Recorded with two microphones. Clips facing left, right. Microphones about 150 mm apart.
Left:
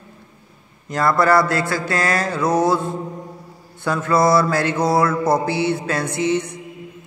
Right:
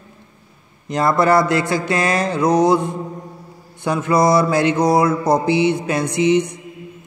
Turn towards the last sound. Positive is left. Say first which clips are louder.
# right 5 dB
turn(degrees=-20)  # may be behind; listen again after turning